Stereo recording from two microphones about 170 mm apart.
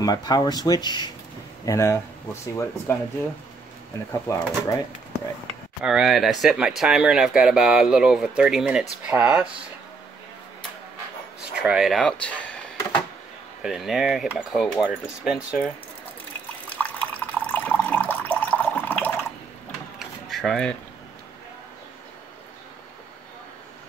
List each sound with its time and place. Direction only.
0.0 s speech: 25° left (ahead or behind)
4.1 s speech: 15° left (ahead or behind)
5.9 s speech: centre (ahead or behind)
11.5 s speech: 5° right (ahead or behind)
13.6 s speech: centre (ahead or behind)
16.6 s water: 10° left (ahead or behind)
20.0 s drawer open or close: centre (ahead or behind)